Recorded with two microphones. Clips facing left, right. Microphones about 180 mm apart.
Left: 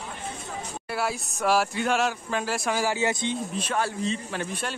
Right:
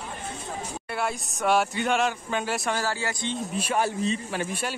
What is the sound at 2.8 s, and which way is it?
Speech, 20° left (ahead or behind).